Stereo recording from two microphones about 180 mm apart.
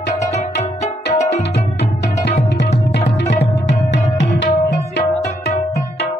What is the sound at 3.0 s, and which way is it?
Music, 60° left (ahead or behind).